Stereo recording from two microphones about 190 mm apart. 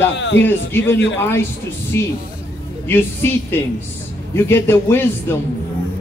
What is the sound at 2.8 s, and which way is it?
A man's voice, 10° left (ahead or behind).